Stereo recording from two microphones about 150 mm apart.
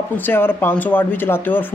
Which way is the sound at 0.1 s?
15° left (ahead or behind).